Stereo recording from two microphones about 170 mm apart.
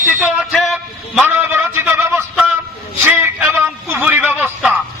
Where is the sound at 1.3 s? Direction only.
15° right (ahead or behind).